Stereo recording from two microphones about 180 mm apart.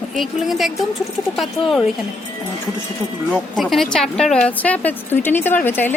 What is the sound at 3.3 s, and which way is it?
Speech, centre (ahead or behind).